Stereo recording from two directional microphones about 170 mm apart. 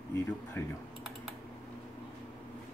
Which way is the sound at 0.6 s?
15° left (ahead or behind).